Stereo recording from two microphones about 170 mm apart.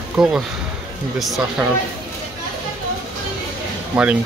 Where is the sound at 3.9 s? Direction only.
5° right (ahead or behind).